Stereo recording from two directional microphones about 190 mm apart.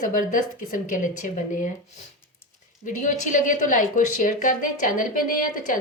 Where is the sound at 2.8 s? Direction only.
40° left (ahead or behind).